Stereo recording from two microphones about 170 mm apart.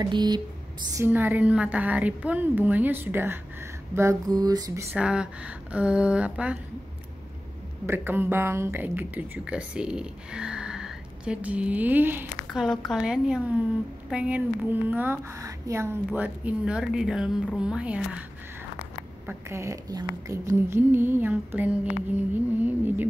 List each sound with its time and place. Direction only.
0.0 s mantra: 25° right (ahead or behind)
0.9 s speech: 10° right (ahead or behind)
3.9 s mantra: 15° right (ahead or behind)
4.9 s speech: 5° right (ahead or behind)
7.8 s speech: 10° right (ahead or behind)
19.2 s speech: 15° right (ahead or behind)